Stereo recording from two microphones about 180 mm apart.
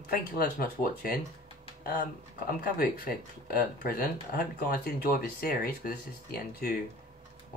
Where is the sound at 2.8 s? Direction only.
55° left (ahead or behind).